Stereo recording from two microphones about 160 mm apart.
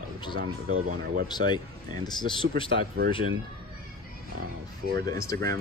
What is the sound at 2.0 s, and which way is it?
Speech, 30° left (ahead or behind).